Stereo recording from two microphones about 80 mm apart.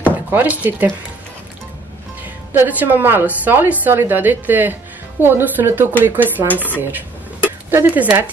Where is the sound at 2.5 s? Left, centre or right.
Right.